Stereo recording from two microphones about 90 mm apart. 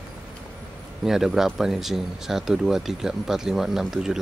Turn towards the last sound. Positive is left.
turn(degrees=-5)  # may be behind; listen again after turning